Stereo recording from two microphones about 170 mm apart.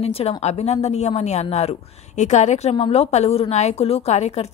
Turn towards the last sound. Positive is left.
turn(degrees=40)  # may be behind; listen again after turning